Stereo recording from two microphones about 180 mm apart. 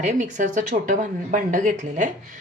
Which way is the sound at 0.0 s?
40° right (ahead or behind).